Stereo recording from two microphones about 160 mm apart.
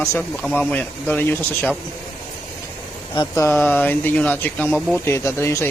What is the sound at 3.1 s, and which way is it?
Speech, 20° left (ahead or behind).